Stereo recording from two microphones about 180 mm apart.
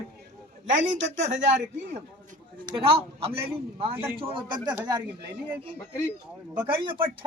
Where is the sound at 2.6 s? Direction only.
30° right (ahead or behind).